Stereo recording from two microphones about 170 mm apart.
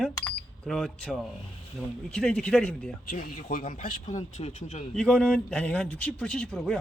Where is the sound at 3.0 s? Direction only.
55° left (ahead or behind).